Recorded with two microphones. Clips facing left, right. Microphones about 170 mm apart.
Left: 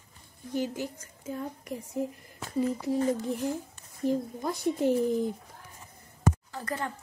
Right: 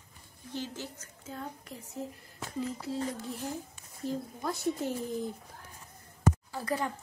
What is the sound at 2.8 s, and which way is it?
Speech, 15° left (ahead or behind).